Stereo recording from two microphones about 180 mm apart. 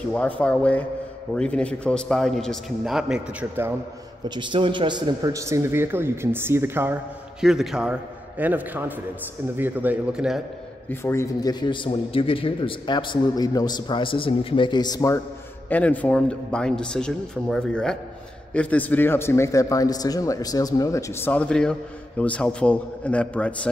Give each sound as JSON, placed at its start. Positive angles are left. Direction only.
{"t": 0.1, "sound": "a man's voice", "side_deg": 5}
{"t": 4.4, "sound": "a man's voice", "side_deg": -25}
{"t": 10.9, "sound": "a man's voice", "side_deg": 15}